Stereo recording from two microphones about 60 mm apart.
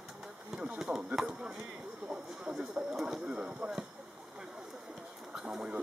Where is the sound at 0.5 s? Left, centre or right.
Centre.